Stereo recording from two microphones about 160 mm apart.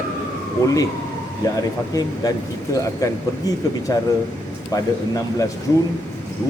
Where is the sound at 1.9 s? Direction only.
20° left (ahead or behind).